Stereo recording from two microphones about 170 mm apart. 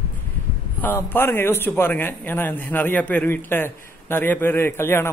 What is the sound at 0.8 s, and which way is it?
A man's voice, 10° left (ahead or behind).